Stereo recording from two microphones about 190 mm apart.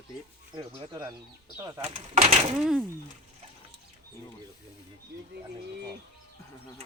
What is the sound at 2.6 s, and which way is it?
Speech, 5° right (ahead or behind).